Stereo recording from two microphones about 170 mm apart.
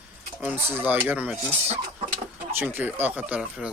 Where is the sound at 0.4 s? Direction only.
10° right (ahead or behind).